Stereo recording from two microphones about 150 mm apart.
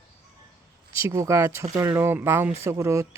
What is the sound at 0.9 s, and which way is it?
Speech, 20° right (ahead or behind).